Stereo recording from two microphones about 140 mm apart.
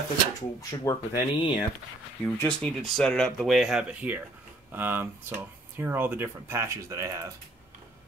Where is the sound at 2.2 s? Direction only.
5° left (ahead or behind); by 7.3 s 20° right (ahead or behind).